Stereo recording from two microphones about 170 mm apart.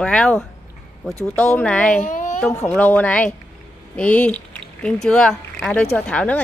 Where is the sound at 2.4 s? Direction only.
10° left (ahead or behind).